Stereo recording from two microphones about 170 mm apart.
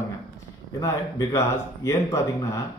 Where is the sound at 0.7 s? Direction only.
20° left (ahead or behind).